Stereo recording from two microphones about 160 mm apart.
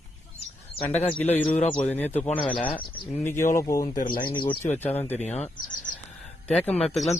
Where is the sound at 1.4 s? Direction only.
10° left (ahead or behind).